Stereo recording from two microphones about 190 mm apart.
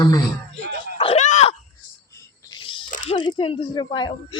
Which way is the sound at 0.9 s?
30° left (ahead or behind).